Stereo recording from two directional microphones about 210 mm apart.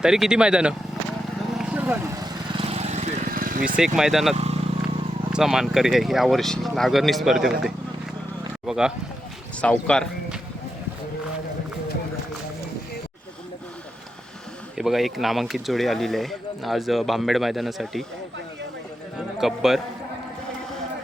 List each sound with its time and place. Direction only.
0.0 s speech: 5° right (ahead or behind)
1.5 s vehicle: 5° right (ahead or behind)
2.2 s lawn mower: 25° right (ahead or behind); by 3.6 s 40° right (ahead or behind)
3.8 s speech: centre (ahead or behind)
4.4 s vehicle: 30° right (ahead or behind)
5.3 s speech: centre (ahead or behind)
14.8 s speech: centre (ahead or behind)
19.4 s speech: centre (ahead or behind)